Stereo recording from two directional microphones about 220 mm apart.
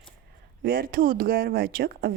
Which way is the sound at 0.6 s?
40° right (ahead or behind).